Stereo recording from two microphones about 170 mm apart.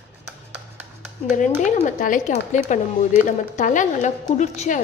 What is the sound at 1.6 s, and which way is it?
A woman's voice, 45° left (ahead or behind).